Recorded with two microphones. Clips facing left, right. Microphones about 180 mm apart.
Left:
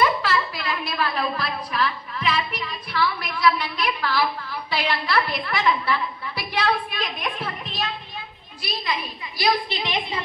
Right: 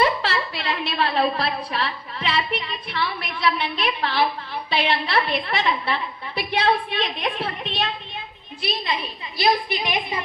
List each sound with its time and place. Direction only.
0.0 s a woman's voice: 30° right (ahead or behind)
9.4 s a woman's voice: 15° right (ahead or behind)